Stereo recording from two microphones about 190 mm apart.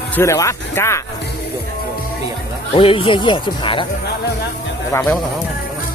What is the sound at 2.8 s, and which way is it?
Speech, 30° left (ahead or behind).